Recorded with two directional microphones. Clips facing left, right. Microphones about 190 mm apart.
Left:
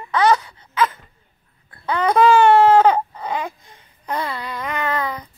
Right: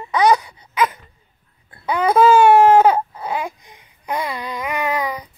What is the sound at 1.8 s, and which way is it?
Baby cry, 10° right (ahead or behind).